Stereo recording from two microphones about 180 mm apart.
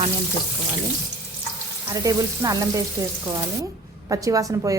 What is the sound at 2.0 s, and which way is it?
Speech, 20° right (ahead or behind).